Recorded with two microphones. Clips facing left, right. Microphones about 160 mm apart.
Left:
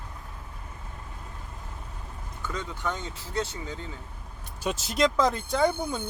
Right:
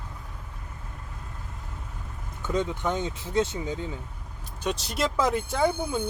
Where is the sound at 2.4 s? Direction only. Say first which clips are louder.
Right 6 dB; 20° right (ahead or behind).